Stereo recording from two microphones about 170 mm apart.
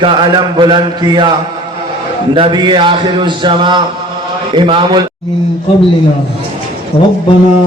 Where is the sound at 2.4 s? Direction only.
30° right (ahead or behind).